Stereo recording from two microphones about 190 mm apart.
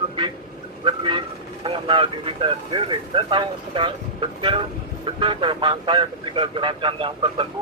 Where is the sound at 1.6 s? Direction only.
25° right (ahead or behind).